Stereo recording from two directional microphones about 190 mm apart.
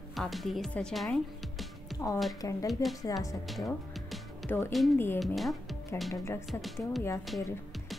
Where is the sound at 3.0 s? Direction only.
20° left (ahead or behind).